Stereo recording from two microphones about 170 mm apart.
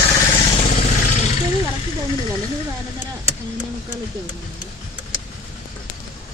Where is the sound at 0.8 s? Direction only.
50° left (ahead or behind).